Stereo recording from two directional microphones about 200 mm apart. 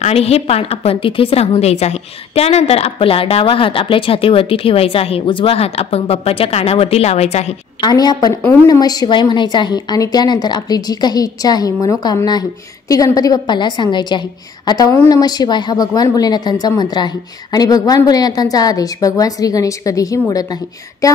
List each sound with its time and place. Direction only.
0.0 s a woman's voice: 30° left (ahead or behind)
7.8 s a woman's voice: 20° left (ahead or behind)